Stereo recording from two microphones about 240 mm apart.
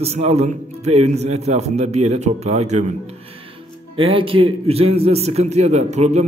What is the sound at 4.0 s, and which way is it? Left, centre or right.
A man's voice, right.